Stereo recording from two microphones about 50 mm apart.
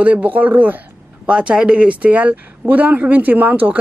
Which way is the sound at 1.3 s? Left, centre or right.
Right.